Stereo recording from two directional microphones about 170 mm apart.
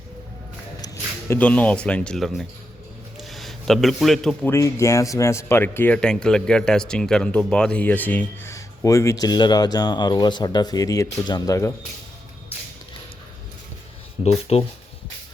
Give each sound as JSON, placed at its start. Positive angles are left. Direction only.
{"t": 1.3, "sound": "speech", "side_deg": 10}
{"t": 4.5, "sound": "speech", "side_deg": 15}
{"t": 14.3, "sound": "speech", "side_deg": 35}